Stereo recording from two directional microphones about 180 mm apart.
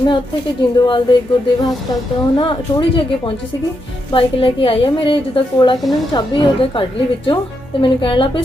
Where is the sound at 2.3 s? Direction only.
30° left (ahead or behind).